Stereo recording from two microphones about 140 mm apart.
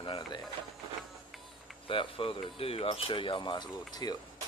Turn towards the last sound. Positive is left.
turn(degrees=30)  # may be behind; listen again after turning